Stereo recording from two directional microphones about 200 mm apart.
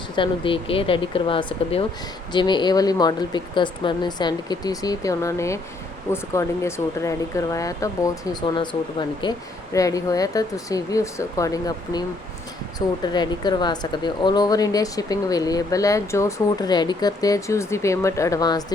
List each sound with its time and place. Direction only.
0.2 s speech: 25° left (ahead or behind)